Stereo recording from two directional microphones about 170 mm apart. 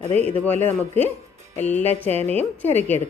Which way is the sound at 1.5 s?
40° left (ahead or behind).